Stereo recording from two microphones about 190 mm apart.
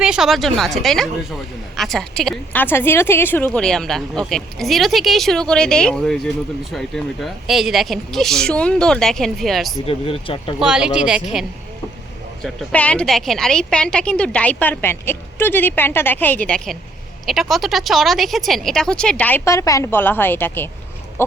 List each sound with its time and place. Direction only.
0.0 s a woman's voice: 5° right (ahead or behind)
9.8 s speech: 30° left (ahead or behind)
10.6 s a woman's voice: 5° right (ahead or behind); by 21.3 s 10° left (ahead or behind)